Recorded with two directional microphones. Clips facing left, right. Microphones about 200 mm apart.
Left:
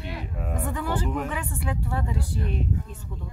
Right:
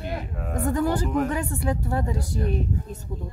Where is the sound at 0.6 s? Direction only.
40° right (ahead or behind).